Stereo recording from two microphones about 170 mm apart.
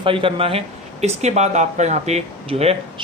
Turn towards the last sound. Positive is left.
turn(degrees=-35)  # may be behind; listen again after turning